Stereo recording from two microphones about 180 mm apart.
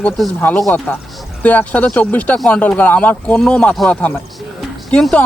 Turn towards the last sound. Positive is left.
turn(degrees=5)  # may be behind; listen again after turning